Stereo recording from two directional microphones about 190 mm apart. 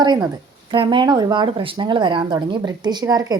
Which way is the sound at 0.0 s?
20° right (ahead or behind).